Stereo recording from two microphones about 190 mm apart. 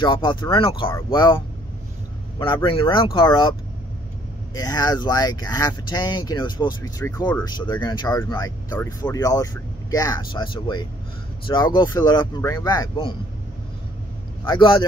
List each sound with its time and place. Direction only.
0.0 s speech: 25° left (ahead or behind)
2.3 s speech: 25° left (ahead or behind)
4.6 s speech: 20° left (ahead or behind)
7.4 s speech: 20° left (ahead or behind)
14.5 s speech: 25° left (ahead or behind)